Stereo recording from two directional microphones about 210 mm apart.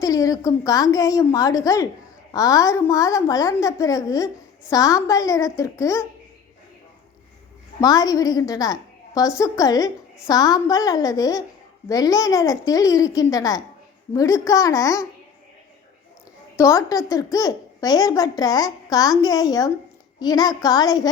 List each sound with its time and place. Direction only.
0.0 s a child's voice: 15° left (ahead or behind)
7.8 s a child's voice: 15° left (ahead or behind)
16.6 s a child's voice: 15° left (ahead or behind)